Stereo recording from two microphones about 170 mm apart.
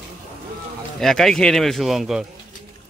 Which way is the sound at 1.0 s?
Centre (ahead or behind).